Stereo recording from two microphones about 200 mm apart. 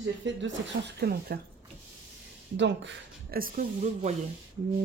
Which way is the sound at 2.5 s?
65° right (ahead or behind).